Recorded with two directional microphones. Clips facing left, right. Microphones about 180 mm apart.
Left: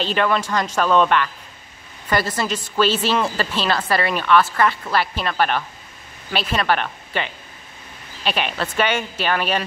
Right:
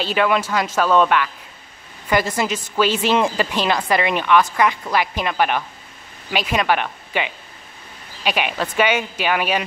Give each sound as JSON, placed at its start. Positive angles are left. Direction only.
{"t": 0.0, "sound": "a woman's voice", "side_deg": -10}